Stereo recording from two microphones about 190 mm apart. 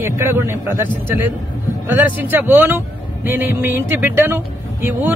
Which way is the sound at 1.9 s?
10° right (ahead or behind).